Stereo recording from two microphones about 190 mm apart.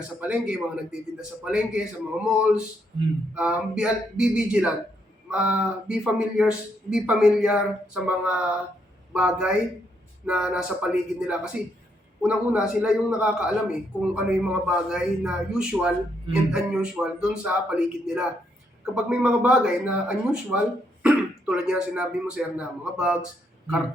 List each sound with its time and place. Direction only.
0.2 s a man's voice: 5° right (ahead or behind)